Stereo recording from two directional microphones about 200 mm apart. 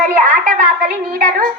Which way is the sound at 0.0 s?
40° right (ahead or behind).